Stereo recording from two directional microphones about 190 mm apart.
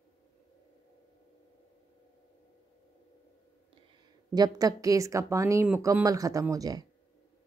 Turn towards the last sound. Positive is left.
turn(degrees=-20)  # may be behind; listen again after turning